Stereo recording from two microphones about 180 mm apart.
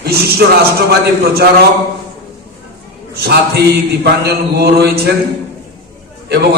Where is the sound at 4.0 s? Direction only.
60° right (ahead or behind).